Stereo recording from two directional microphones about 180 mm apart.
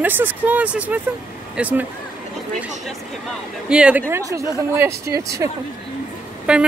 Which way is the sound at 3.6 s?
5° right (ahead or behind).